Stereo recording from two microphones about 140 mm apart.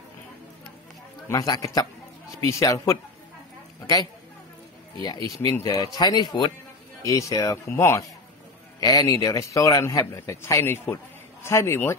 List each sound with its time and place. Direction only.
1.3 s a man's voice: 30° left (ahead or behind)
5.0 s a man's voice: 30° left (ahead or behind)